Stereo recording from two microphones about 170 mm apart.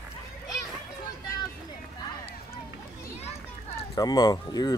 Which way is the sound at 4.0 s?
20° left (ahead or behind).